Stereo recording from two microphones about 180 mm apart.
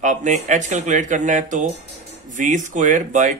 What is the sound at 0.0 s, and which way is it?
A man's voice, 40° right (ahead or behind).